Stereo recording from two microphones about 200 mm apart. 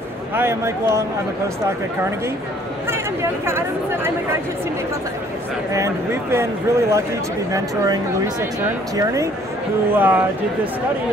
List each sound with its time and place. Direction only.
0.4 s speech: 15° right (ahead or behind)
2.9 s speech: 10° right (ahead or behind)
5.7 s speech: 15° right (ahead or behind)